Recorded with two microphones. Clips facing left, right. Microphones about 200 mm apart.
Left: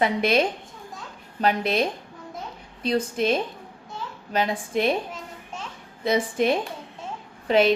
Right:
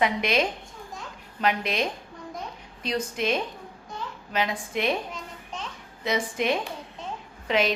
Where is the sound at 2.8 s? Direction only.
30° left (ahead or behind).